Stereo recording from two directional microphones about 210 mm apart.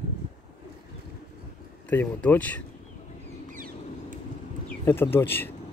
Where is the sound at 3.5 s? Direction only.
40° right (ahead or behind).